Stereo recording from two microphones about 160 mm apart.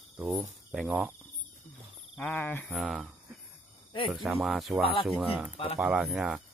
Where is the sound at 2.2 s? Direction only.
10° left (ahead or behind).